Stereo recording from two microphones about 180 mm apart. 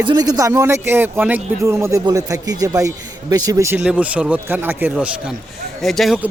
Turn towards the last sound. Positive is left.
turn(degrees=0)  # may be behind; listen again after turning